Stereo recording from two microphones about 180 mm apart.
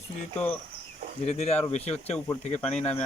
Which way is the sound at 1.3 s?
35° left (ahead or behind).